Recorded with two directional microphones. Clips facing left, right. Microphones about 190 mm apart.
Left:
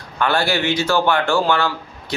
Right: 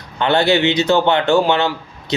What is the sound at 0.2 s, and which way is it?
Speech, 20° right (ahead or behind).